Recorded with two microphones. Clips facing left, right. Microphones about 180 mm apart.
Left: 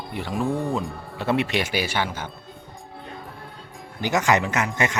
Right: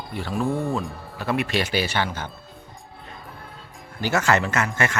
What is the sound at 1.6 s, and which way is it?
Speech, 10° left (ahead or behind).